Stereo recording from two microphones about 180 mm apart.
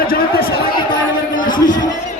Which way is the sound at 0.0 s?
55° left (ahead or behind).